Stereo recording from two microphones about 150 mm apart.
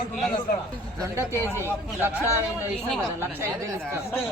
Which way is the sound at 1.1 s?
20° right (ahead or behind).